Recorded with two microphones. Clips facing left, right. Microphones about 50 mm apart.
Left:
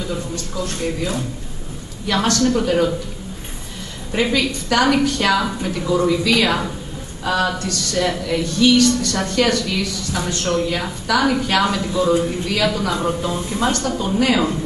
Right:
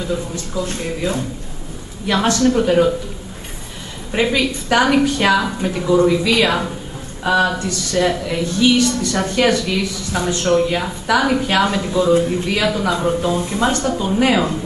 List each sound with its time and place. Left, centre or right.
0.6 s a woman's voice: right
2.2 s a woman's voice: right
4.1 s a woman's voice: centre